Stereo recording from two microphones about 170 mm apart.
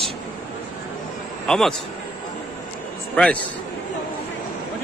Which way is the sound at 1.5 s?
5° left (ahead or behind).